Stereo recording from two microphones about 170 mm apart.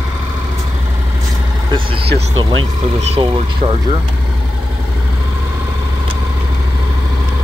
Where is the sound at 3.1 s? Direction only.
30° right (ahead or behind).